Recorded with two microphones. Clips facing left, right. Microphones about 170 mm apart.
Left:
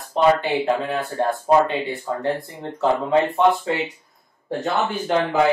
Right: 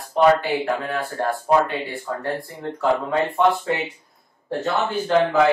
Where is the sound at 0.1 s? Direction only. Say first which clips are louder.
Right 1 dB; 20° left (ahead or behind).